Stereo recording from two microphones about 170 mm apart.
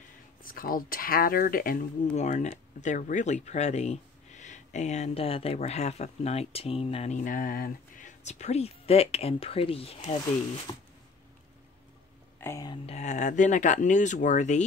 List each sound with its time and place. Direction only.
0.4 s speech: 55° left (ahead or behind)
2.1 s speech: 45° left (ahead or behind)
12.4 s speech: 15° left (ahead or behind)
12.8 s speech: 45° left (ahead or behind)